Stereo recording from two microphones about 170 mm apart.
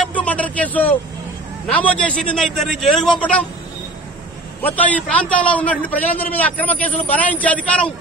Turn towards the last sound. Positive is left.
turn(degrees=5)  # may be behind; listen again after turning